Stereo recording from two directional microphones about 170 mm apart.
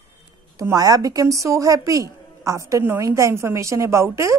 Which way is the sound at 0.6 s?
20° right (ahead or behind).